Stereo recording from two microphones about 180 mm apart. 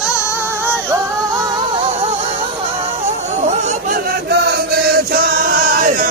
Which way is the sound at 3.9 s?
60° right (ahead or behind).